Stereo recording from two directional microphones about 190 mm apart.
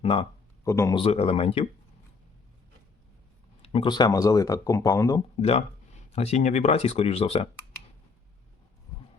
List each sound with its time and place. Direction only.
0.0 s speech: 30° left (ahead or behind)
0.6 s speech: 15° left (ahead or behind)
0.9 s speech: 30° left (ahead or behind)
3.6 s speech: 30° left (ahead or behind)
5.4 s speech: 30° left (ahead or behind)